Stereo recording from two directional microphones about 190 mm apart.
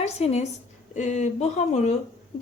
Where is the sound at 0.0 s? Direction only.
35° left (ahead or behind).